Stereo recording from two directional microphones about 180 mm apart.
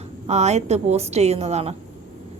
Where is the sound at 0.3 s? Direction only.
40° right (ahead or behind).